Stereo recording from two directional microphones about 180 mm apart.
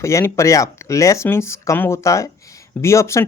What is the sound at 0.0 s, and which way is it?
Speech, 15° left (ahead or behind).